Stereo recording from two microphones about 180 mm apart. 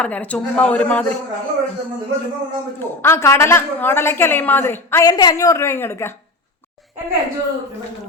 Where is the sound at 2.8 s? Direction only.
15° left (ahead or behind).